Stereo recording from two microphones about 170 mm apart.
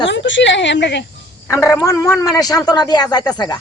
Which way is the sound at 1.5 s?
15° left (ahead or behind).